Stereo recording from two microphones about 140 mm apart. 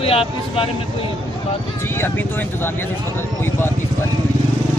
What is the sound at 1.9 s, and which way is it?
Speech, 15° left (ahead or behind).